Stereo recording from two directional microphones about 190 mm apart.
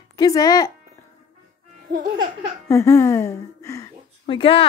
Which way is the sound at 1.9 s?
45° right (ahead or behind).